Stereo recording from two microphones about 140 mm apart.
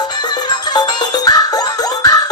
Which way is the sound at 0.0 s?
30° left (ahead or behind).